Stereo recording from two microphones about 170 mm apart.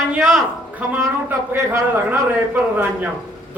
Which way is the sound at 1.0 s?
15° right (ahead or behind).